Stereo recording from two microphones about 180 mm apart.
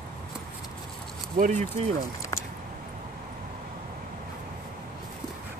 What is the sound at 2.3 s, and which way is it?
Keys jangling, 20° left (ahead or behind).